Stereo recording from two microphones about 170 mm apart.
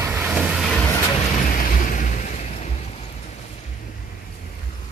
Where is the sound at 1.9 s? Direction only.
50° left (ahead or behind).